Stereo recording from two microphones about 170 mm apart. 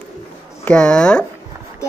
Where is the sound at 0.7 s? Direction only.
5° left (ahead or behind).